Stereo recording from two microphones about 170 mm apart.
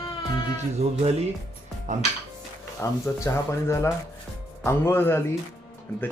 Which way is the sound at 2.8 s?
15° left (ahead or behind).